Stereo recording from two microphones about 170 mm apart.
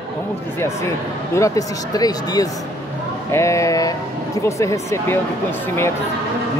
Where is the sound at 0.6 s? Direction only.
15° left (ahead or behind).